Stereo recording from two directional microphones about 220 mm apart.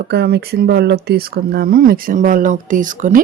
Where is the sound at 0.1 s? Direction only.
45° right (ahead or behind).